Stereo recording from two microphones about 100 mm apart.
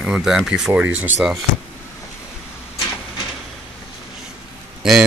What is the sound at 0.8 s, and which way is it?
Speech, 15° right (ahead or behind).